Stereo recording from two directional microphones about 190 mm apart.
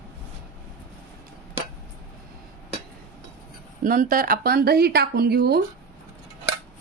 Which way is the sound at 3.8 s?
45° right (ahead or behind).